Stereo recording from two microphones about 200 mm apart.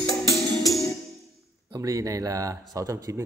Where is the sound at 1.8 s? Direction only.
15° right (ahead or behind).